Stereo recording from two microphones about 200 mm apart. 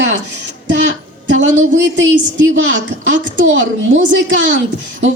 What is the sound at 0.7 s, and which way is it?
A woman's voice, 70° right (ahead or behind).